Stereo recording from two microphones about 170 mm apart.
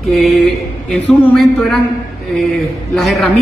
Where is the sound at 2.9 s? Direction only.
Centre (ahead or behind).